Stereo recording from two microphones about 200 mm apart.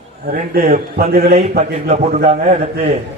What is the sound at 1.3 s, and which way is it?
A man's voice, 35° right (ahead or behind).